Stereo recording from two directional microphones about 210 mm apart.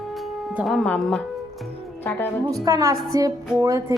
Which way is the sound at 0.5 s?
Centre (ahead or behind).